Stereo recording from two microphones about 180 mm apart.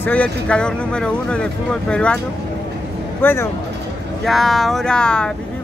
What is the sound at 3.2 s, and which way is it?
Speech, 15° left (ahead or behind).